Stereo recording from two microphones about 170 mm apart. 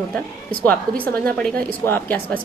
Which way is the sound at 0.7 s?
10° left (ahead or behind).